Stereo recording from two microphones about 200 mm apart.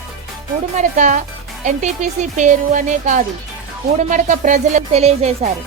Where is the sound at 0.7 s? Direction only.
35° right (ahead or behind).